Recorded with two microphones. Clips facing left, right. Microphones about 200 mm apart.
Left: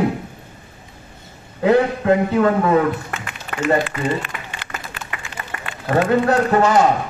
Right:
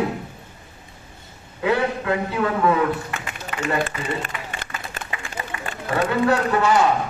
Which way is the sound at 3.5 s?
50° left (ahead or behind).